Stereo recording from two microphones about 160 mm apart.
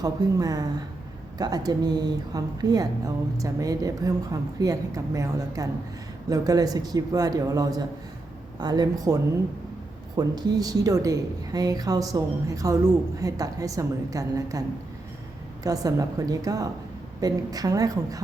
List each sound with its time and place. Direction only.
0.0 s a woman's voice: 25° right (ahead or behind)
10.2 s a woman's voice: 25° right (ahead or behind)
15.6 s a woman's voice: 20° right (ahead or behind)